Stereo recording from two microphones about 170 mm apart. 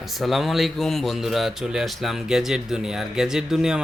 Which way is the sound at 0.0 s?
Centre (ahead or behind).